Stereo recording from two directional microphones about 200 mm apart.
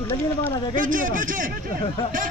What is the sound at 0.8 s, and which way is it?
Speech, 40° right (ahead or behind).